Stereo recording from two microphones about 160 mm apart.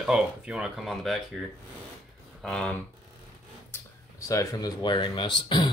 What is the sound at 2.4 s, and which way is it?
Speech, 5° left (ahead or behind).